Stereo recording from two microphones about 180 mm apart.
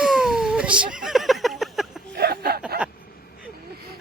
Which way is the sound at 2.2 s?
60° right (ahead or behind).